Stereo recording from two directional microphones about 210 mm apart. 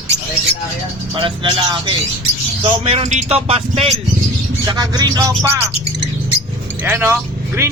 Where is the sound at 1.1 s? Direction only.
25° right (ahead or behind).